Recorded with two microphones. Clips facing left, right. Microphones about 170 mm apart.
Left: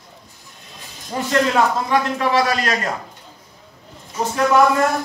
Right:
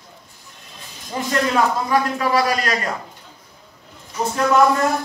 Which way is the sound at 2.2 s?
25° left (ahead or behind).